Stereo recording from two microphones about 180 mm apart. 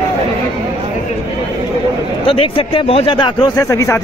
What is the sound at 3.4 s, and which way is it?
Speech, 20° left (ahead or behind).